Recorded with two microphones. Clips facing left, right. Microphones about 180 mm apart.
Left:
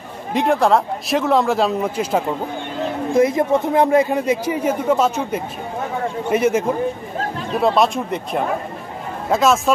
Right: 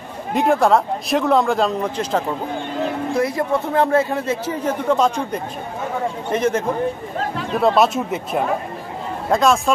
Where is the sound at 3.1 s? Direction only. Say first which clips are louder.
Left 6 dB; 20° left (ahead or behind).